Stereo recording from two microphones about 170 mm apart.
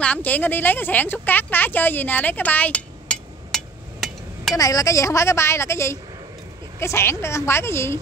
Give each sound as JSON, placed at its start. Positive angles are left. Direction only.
{"t": 0.0, "sound": "a woman's voice", "side_deg": 10}
{"t": 4.6, "sound": "a woman's voice", "side_deg": 20}